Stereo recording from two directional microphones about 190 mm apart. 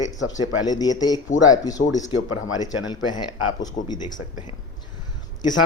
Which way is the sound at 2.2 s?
90° left.